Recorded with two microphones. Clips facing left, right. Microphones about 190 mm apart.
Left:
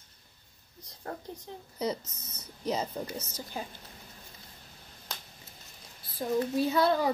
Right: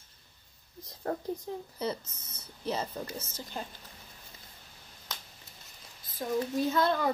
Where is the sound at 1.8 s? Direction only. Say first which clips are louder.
Left 5 dB; 15° left (ahead or behind).